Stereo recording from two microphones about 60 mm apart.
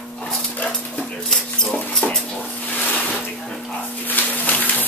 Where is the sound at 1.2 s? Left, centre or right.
Centre.